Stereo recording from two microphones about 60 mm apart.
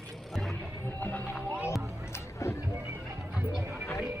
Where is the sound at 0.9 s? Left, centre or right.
Left.